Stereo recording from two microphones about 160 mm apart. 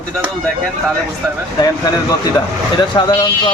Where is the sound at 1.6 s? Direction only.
25° left (ahead or behind).